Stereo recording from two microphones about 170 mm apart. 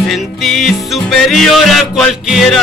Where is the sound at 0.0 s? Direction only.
Centre (ahead or behind).